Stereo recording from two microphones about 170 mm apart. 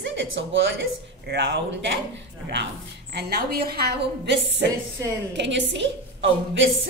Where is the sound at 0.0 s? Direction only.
90° right.